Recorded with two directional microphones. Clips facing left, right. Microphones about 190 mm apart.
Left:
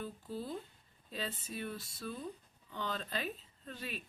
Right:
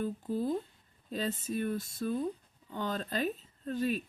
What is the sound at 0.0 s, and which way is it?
Speech, 50° right (ahead or behind).